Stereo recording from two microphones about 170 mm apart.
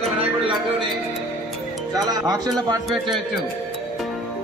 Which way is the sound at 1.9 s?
20° right (ahead or behind).